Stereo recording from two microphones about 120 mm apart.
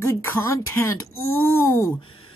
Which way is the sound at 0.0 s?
20° left (ahead or behind).